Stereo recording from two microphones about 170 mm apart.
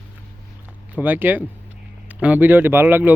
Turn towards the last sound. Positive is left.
turn(degrees=-10)  # may be behind; listen again after turning